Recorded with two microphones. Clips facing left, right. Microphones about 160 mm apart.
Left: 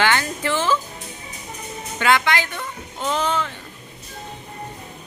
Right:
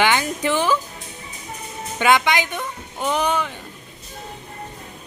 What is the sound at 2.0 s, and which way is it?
Speech, 15° right (ahead or behind).